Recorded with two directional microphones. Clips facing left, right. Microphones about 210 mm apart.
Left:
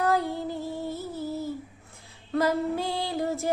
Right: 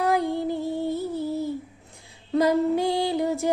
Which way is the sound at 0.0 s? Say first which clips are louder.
Right 3 dB; 15° right (ahead or behind).